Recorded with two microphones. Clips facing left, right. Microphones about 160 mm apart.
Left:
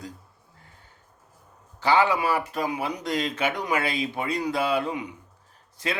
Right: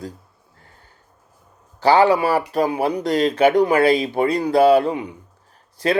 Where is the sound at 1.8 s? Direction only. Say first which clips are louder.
Right 7 dB; 35° right (ahead or behind).